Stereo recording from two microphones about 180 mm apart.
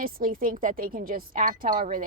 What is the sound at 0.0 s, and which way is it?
A woman's voice, 50° right (ahead or behind).